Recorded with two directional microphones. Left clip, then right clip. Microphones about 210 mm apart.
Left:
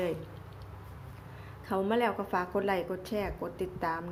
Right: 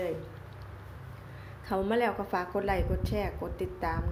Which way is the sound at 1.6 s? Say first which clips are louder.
Right 1 dB; 5° left (ahead or behind).